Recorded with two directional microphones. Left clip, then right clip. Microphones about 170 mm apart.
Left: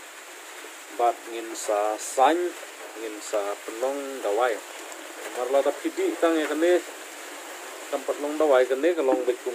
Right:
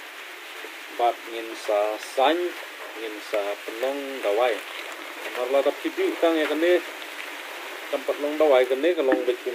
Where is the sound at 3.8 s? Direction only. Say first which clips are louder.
Right 1 dB; centre (ahead or behind).